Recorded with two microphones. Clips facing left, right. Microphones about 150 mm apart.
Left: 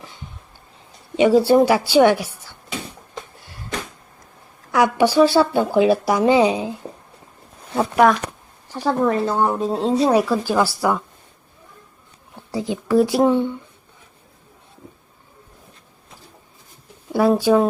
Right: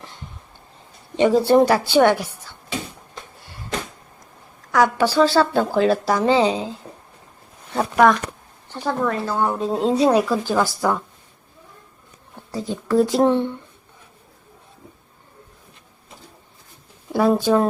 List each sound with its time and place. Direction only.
1.1 s speech: 10° left (ahead or behind)
4.7 s speech: 15° left (ahead or behind)
7.8 s speech: centre (ahead or behind)
8.7 s speech: 15° left (ahead or behind)
9.7 s speech: centre (ahead or behind)
12.5 s speech: 15° left (ahead or behind)
17.1 s speech: centre (ahead or behind)